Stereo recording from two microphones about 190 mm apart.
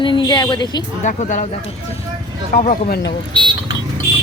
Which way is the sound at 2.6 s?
45° left (ahead or behind).